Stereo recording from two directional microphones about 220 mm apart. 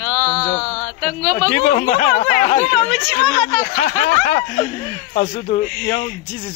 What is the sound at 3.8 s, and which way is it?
Speech, 35° left (ahead or behind).